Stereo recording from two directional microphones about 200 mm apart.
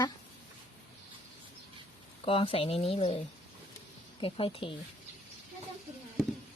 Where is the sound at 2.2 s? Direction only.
25° left (ahead or behind).